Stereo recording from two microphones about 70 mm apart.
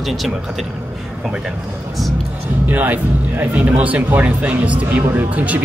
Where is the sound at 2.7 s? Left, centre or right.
Right.